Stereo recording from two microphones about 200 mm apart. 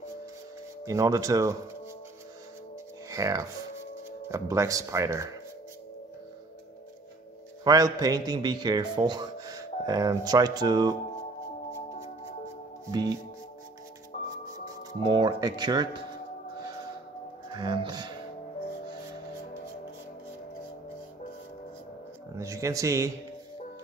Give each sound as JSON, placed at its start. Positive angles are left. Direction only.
{"t": 0.8, "sound": "speech", "side_deg": -15}
{"t": 3.1, "sound": "speech", "side_deg": -15}
{"t": 7.6, "sound": "a man's voice", "side_deg": -20}
{"t": 12.9, "sound": "a man's voice", "side_deg": -20}
{"t": 14.1, "sound": "music", "side_deg": 35}
{"t": 15.0, "sound": "a man's voice", "side_deg": -20}
{"t": 17.5, "sound": "speech", "side_deg": -20}
{"t": 22.4, "sound": "speech", "side_deg": -15}